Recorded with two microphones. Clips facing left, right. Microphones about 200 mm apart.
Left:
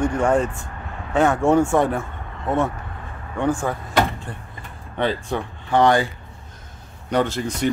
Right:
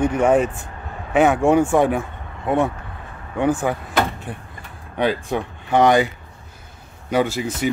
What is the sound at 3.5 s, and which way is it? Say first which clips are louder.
Speech: right 1 dB; 5° right (ahead or behind).